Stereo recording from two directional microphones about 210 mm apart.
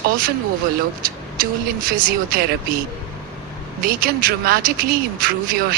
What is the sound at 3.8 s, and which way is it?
A man's voice, 45° right (ahead or behind).